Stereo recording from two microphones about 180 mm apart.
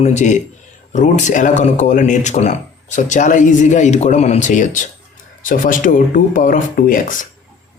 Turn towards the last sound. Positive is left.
turn(degrees=50)  # may be behind; listen again after turning